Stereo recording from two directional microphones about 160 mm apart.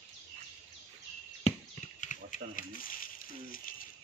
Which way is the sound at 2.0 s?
55° left (ahead or behind).